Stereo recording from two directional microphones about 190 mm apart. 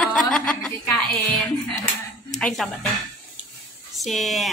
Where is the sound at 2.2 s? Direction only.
5° left (ahead or behind).